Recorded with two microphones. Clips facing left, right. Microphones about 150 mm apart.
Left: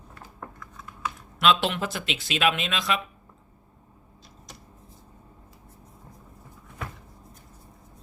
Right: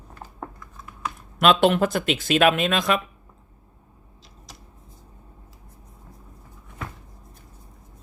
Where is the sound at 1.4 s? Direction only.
50° right (ahead or behind).